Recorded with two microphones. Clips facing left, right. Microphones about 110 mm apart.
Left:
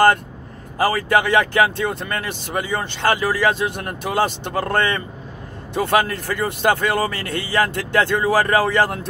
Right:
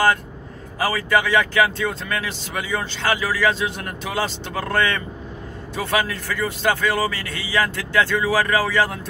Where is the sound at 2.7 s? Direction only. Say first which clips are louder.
Left 2 dB; 45° left (ahead or behind).